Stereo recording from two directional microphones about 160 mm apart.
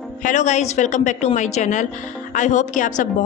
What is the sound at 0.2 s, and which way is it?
A woman's voice, 50° left (ahead or behind).